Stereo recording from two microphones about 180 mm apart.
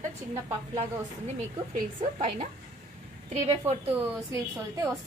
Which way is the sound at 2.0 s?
35° right (ahead or behind).